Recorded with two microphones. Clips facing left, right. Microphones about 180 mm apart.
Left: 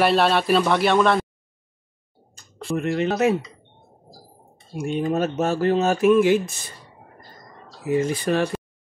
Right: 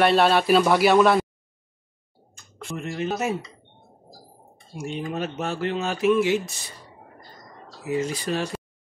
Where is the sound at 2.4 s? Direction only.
35° left (ahead or behind).